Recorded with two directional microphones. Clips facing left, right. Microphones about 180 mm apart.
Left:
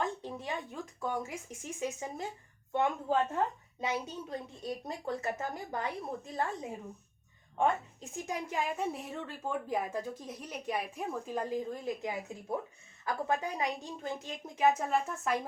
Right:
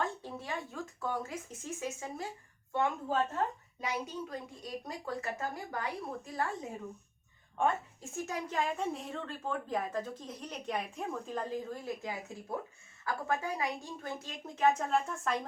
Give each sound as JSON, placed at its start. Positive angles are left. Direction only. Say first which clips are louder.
{"t": 0.0, "sound": "a woman's voice", "louder": "left 1 dB", "side_deg": 15}
{"t": 8.1, "sound": "speech", "louder": "even", "side_deg": 15}